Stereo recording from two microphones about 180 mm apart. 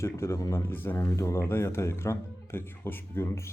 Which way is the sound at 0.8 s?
15° left (ahead or behind).